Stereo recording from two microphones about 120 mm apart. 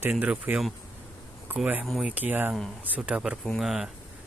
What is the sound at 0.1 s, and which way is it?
Speech, 10° right (ahead or behind).